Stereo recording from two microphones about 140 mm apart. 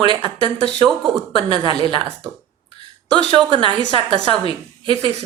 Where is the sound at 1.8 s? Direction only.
35° right (ahead or behind).